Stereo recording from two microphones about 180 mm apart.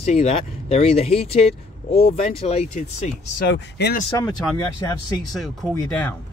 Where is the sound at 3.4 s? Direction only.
70° left (ahead or behind).